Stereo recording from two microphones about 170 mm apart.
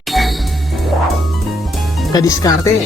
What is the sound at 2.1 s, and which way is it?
Speech, 20° left (ahead or behind).